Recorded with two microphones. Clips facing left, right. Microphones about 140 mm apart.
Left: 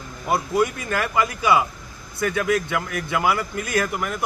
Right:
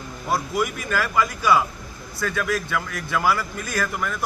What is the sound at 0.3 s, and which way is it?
A man's voice, 25° left (ahead or behind).